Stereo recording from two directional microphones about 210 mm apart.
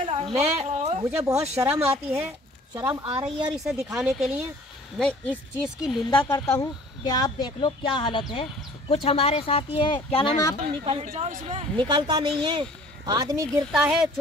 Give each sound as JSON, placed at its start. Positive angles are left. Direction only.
{"t": 0.0, "sound": "a sound", "side_deg": -30}
{"t": 1.6, "sound": "speech", "side_deg": -10}
{"t": 3.5, "sound": "speech", "side_deg": 0}
{"t": 6.3, "sound": "speech", "side_deg": 15}
{"t": 10.9, "sound": "speech", "side_deg": -30}
{"t": 11.7, "sound": "speech", "side_deg": -20}
{"t": 13.7, "sound": "speech", "side_deg": 0}